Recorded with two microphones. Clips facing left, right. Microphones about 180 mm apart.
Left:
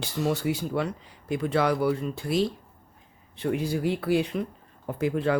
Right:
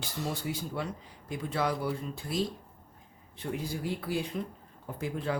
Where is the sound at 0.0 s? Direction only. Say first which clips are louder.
Left 8 dB; 70° left (ahead or behind).